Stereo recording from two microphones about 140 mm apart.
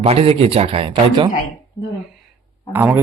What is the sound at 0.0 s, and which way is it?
Speech, 45° right (ahead or behind).